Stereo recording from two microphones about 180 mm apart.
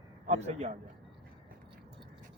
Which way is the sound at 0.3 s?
40° right (ahead or behind).